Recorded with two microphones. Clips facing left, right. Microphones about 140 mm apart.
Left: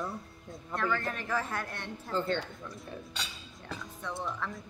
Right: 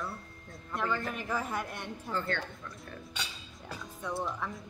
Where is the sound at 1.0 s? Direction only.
10° right (ahead or behind).